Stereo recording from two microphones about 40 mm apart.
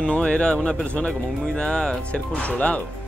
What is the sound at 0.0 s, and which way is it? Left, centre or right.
Speech, left.